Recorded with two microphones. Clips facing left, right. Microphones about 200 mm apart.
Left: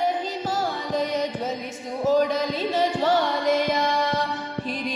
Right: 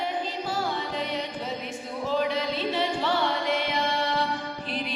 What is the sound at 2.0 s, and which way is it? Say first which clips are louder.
Music: left 6 dB; 40° left (ahead or behind).